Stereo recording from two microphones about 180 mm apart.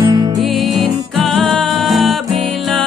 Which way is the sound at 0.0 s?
25° right (ahead or behind).